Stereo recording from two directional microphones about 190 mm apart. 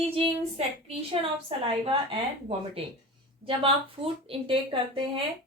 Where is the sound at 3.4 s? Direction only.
30° right (ahead or behind).